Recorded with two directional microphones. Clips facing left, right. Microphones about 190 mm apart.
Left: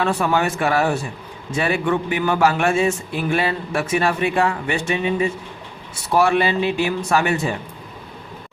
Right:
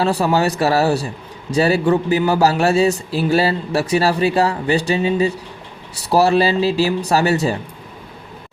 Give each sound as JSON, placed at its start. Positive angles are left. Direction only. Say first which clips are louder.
{"t": 0.0, "sound": "a man's voice", "louder": "right 3 dB", "side_deg": -35}